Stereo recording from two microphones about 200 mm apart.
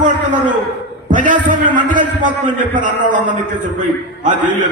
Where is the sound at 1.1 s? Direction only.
40° right (ahead or behind).